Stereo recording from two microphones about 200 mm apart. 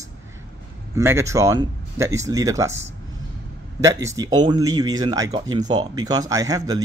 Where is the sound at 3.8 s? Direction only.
15° right (ahead or behind).